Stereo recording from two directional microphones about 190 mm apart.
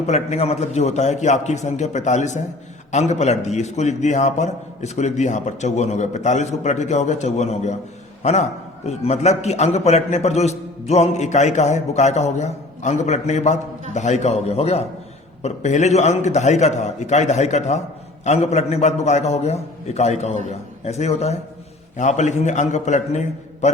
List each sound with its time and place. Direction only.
0.1 s a man's voice: 35° left (ahead or behind)